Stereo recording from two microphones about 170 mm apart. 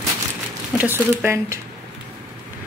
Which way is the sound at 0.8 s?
10° right (ahead or behind).